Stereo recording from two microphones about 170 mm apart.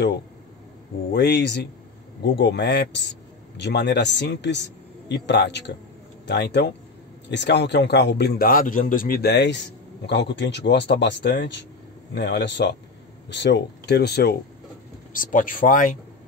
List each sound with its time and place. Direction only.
1.1 s a man's voice: 80° left
15.1 s speech: 55° left (ahead or behind)